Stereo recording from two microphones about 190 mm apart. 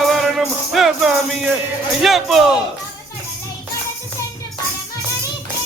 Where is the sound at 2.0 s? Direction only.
Centre (ahead or behind).